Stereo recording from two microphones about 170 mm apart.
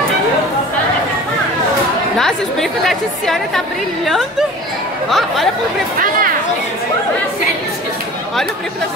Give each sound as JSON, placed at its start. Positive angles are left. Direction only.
{"t": 2.1, "sound": "a woman's voice", "side_deg": 0}